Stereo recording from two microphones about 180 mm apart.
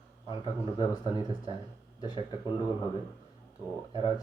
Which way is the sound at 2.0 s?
25° left (ahead or behind).